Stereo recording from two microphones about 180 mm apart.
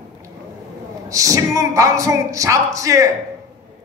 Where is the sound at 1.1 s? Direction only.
20° right (ahead or behind).